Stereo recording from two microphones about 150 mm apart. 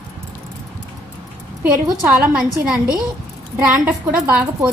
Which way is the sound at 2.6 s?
5° right (ahead or behind).